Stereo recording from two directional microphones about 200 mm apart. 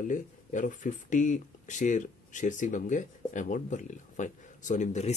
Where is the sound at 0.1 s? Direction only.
40° left (ahead or behind).